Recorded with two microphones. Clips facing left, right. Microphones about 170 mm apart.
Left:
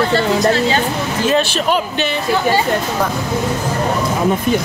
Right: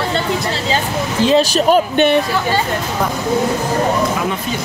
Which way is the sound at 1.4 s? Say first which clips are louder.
Right 4 dB; 40° right (ahead or behind).